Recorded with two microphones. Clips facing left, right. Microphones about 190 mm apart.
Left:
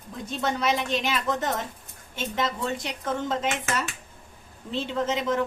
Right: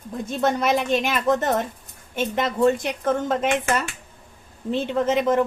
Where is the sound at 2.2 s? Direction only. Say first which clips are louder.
Right 7 dB; 55° right (ahead or behind).